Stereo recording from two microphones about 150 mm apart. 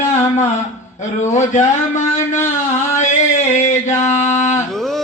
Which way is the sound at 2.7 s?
50° left (ahead or behind).